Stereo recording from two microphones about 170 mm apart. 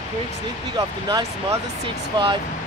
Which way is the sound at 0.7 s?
20° right (ahead or behind).